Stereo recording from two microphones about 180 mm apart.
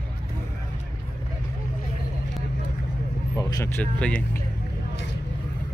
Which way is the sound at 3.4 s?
20° left (ahead or behind).